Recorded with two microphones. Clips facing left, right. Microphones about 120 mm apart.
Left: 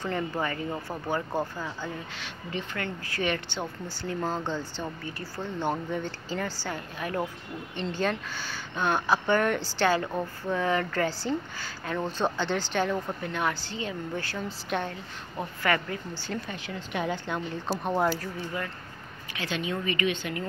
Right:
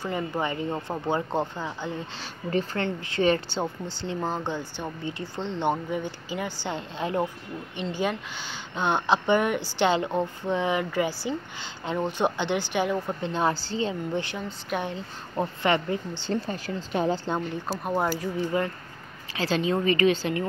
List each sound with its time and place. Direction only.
0.0 s speech: 10° right (ahead or behind)
5.9 s a woman's voice: 10° right (ahead or behind)
7.8 s a woman's voice: 10° right (ahead or behind)
8.7 s a woman's voice: 20° right (ahead or behind)
13.2 s speech: 30° right (ahead or behind)
17.6 s speech: centre (ahead or behind)
19.3 s speech: 35° right (ahead or behind)